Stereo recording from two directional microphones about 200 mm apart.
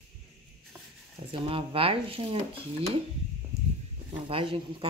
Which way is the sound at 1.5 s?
25° right (ahead or behind).